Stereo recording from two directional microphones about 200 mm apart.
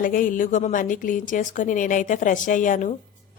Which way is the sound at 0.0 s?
45° left (ahead or behind).